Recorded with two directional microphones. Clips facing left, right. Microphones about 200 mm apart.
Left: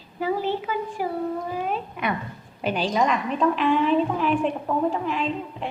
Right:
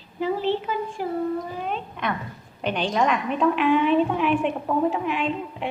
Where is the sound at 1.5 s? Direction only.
5° left (ahead or behind).